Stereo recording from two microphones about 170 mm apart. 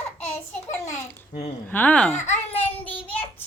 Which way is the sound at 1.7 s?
10° left (ahead or behind).